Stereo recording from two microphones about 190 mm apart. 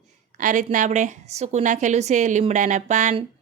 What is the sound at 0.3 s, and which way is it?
A woman's voice, 40° right (ahead or behind).